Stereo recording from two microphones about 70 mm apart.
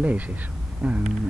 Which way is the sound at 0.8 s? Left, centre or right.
Centre.